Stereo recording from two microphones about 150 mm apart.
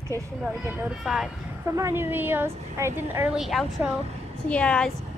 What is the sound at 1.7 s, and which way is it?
A woman's voice, 20° right (ahead or behind).